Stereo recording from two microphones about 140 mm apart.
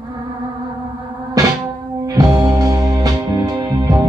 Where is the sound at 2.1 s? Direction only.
25° right (ahead or behind).